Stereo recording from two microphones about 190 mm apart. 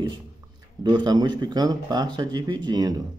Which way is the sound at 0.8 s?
25° right (ahead or behind).